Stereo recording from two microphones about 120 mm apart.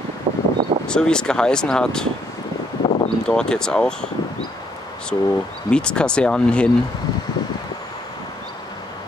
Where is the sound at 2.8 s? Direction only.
40° left (ahead or behind).